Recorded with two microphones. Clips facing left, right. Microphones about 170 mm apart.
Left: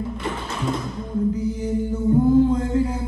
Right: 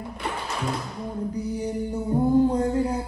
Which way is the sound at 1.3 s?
35° right (ahead or behind).